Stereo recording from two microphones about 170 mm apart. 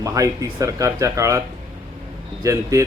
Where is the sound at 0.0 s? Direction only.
20° right (ahead or behind).